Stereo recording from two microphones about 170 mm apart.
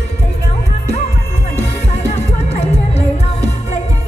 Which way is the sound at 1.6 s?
40° left (ahead or behind).